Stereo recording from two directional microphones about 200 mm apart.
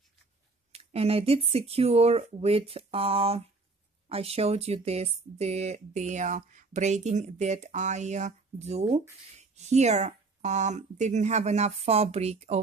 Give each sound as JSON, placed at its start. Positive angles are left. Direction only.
{"t": 0.7, "sound": "speech", "side_deg": -30}